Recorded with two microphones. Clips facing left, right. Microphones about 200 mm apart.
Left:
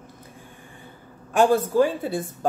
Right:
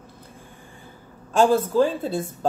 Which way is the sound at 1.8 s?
15° left (ahead or behind).